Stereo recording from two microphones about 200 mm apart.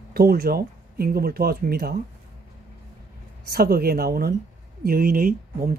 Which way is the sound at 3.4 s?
50° right (ahead or behind).